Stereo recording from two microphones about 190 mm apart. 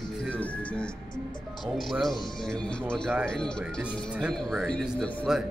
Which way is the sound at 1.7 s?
Centre (ahead or behind).